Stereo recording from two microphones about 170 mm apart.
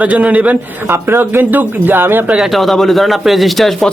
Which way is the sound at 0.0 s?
10° right (ahead or behind).